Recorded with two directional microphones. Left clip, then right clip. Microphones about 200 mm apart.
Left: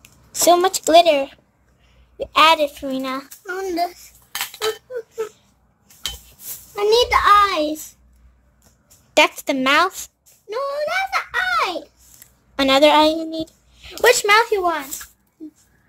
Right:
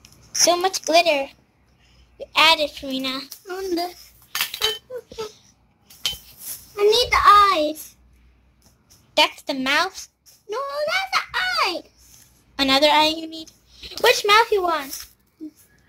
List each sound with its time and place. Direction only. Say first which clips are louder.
0.5 s a child's voice: left 7 dB; 50° left (ahead or behind); by 4.0 s 30° left (ahead or behind)
6.7 s a child's voice: left 2 dB; 35° left (ahead or behind)
9.1 s speech: left 3 dB; 50° left (ahead or behind)
10.5 s a child's voice: left 2 dB; 15° left (ahead or behind)
12.5 s a child's voice: left 3 dB; 45° left (ahead or behind); by 14.9 s 30° left (ahead or behind)